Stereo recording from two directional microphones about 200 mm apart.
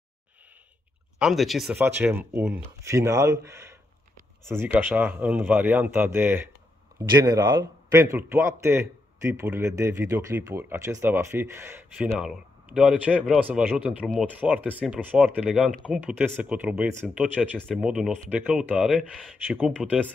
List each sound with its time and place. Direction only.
1.2 s a man's voice: centre (ahead or behind)
4.7 s a man's voice: 10° right (ahead or behind)
19.4 s a man's voice: 10° right (ahead or behind)